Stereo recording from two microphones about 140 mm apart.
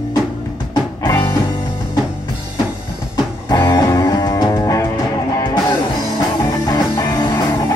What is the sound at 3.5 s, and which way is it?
Music, 25° left (ahead or behind).